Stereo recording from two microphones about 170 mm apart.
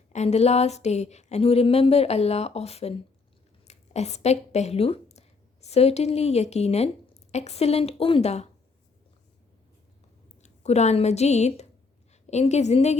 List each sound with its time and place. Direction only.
0.1 s speech: 40° left (ahead or behind)
10.4 s a woman's voice: 40° left (ahead or behind)